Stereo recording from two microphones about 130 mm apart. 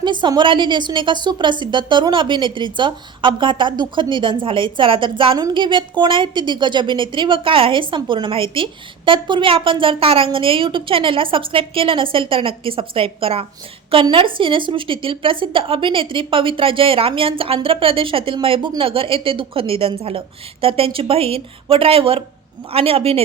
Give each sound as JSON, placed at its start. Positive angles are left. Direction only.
{"t": 0.0, "sound": "a woman's voice", "side_deg": -35}